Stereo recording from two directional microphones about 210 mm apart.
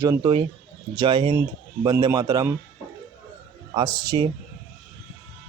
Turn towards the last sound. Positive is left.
turn(degrees=-15)  # may be behind; listen again after turning